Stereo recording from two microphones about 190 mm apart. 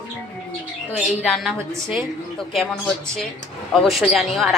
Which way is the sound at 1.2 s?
Centre (ahead or behind).